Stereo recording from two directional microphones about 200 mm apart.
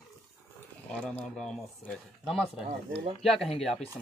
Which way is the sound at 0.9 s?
5° left (ahead or behind).